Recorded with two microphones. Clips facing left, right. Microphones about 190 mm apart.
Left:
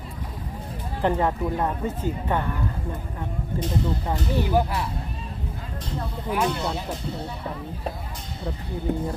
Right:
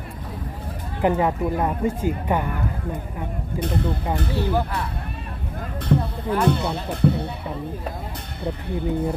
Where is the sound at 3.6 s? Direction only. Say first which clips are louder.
Right 2 dB; 60° right (ahead or behind).